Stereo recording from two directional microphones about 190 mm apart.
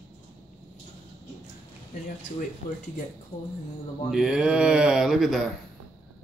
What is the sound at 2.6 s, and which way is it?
Speech, 55° left (ahead or behind).